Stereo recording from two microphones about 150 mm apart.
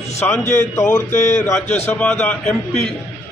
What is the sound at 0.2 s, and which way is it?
A man's voice, 15° left (ahead or behind).